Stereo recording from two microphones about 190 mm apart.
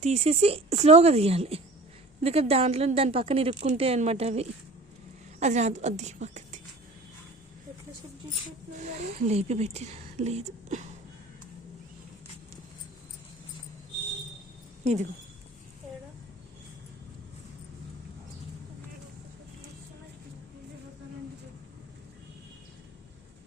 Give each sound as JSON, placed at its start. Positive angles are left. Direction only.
{"t": 0.0, "sound": "speech", "side_deg": -35}
{"t": 8.7, "sound": "speech", "side_deg": -40}
{"t": 14.8, "sound": "speech", "side_deg": -35}